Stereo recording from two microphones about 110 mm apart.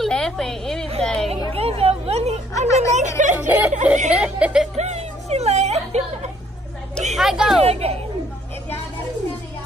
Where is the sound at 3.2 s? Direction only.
90° right.